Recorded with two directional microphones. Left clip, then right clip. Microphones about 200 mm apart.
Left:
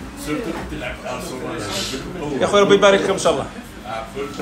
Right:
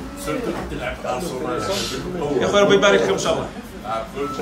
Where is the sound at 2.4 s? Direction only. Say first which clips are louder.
Left 2 dB; 5° right (ahead or behind).